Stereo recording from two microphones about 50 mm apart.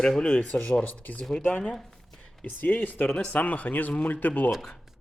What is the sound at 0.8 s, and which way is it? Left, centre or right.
Speech, left.